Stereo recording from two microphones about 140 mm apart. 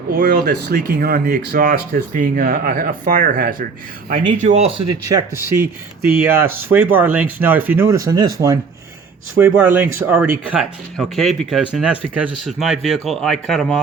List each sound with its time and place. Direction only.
0.2 s speech: 90° right
4.3 s speech: 55° right (ahead or behind)
4.9 s speech: 30° right (ahead or behind)
6.1 s speech: 15° right (ahead or behind)
9.4 s speech: 15° right (ahead or behind)
10.6 s speech: centre (ahead or behind)